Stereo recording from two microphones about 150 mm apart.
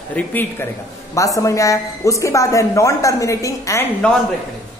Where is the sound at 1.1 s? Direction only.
20° left (ahead or behind).